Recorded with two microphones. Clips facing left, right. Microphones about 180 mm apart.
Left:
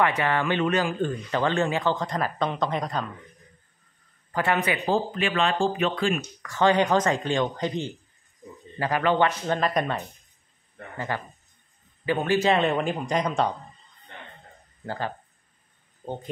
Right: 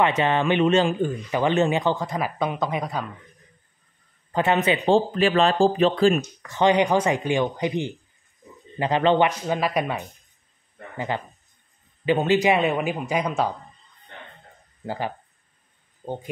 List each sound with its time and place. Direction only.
0.0 s speech: 20° right (ahead or behind)
0.9 s speech: 10° right (ahead or behind)
2.0 s speech: 5° right (ahead or behind)
4.3 s speech: 25° right (ahead or behind)
6.4 s speech: 20° right (ahead or behind)
9.5 s speech: 10° right (ahead or behind)
11.0 s speech: 20° right (ahead or behind); by 13.6 s 5° right (ahead or behind)
14.9 s speech: 15° right (ahead or behind)